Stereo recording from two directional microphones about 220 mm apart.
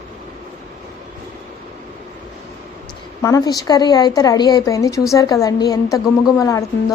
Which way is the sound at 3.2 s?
15° left (ahead or behind).